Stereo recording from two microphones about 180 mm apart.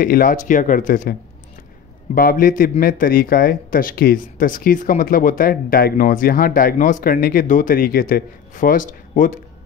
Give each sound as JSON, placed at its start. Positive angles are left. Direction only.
{"t": 0.0, "sound": "speech", "side_deg": 50}
{"t": 2.1, "sound": "speech", "side_deg": 55}